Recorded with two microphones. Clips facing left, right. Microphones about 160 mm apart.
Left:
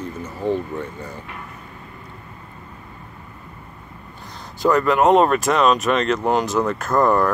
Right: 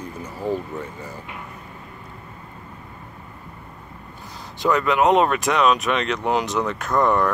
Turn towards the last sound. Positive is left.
turn(degrees=5)  # may be behind; listen again after turning